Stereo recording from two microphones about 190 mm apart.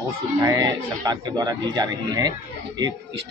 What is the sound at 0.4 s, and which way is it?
Speech, 20° right (ahead or behind).